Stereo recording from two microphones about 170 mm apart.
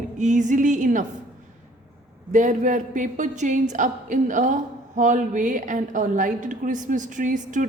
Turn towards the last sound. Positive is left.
turn(degrees=-50)  # may be behind; listen again after turning